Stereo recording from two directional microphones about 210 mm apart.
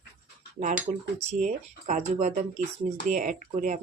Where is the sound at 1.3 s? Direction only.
40° right (ahead or behind).